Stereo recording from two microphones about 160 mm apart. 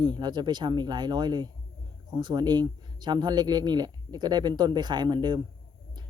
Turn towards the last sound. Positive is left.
turn(degrees=-30)  # may be behind; listen again after turning